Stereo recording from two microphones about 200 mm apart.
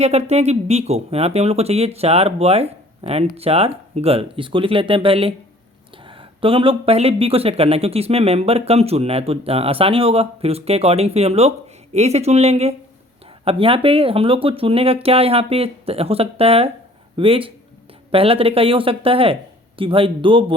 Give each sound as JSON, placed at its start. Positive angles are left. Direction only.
{"t": 0.0, "sound": "speech", "side_deg": -30}